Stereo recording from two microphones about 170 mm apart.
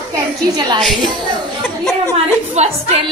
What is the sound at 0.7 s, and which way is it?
Speech, centre (ahead or behind).